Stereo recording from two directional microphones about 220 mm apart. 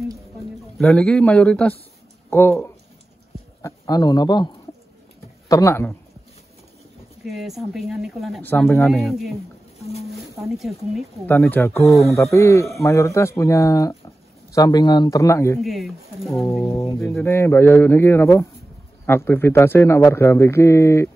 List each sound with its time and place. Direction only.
0.7 s a man's voice: 5° left (ahead or behind)
5.5 s a man's voice: 15° left (ahead or behind)
7.2 s speech: centre (ahead or behind)
10.5 s a man's voice: centre (ahead or behind)
15.6 s speech: centre (ahead or behind)
16.6 s a man's voice: 15° left (ahead or behind)